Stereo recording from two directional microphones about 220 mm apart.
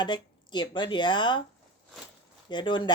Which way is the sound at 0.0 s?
20° left (ahead or behind).